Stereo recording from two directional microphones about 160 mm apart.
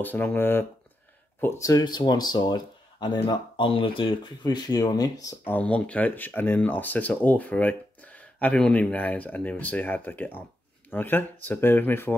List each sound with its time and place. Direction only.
0.0 s speech: 10° left (ahead or behind)
5.5 s speech: 10° left (ahead or behind)